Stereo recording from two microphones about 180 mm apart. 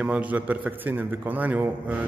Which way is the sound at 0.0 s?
10° right (ahead or behind).